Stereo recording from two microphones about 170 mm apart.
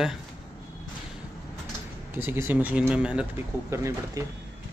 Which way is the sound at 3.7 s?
20° right (ahead or behind).